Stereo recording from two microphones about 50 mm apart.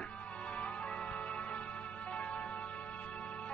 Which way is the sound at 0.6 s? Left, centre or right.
Left.